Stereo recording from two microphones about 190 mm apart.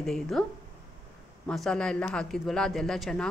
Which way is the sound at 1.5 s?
5° left (ahead or behind).